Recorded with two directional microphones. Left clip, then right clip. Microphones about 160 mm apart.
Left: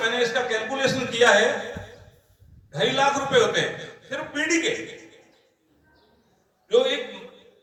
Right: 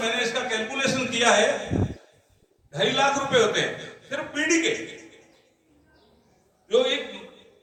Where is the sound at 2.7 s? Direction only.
30° right (ahead or behind).